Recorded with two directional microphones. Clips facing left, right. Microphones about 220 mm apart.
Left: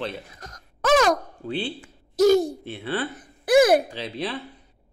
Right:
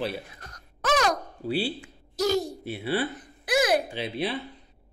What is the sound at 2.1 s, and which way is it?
Speech, 50° left (ahead or behind).